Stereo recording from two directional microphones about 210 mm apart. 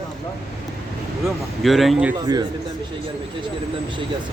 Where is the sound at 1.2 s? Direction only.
Centre (ahead or behind).